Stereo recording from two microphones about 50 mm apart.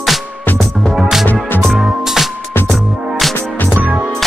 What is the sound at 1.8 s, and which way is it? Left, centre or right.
Music, centre.